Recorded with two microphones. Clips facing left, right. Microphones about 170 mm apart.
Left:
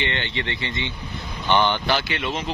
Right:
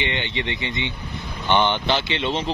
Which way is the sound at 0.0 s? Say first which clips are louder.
Right 1 dB; 15° right (ahead or behind).